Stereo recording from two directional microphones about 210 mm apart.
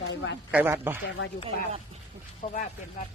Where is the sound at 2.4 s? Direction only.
25° left (ahead or behind).